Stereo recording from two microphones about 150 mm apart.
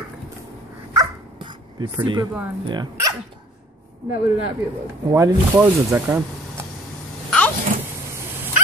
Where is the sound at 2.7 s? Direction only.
25° right (ahead or behind).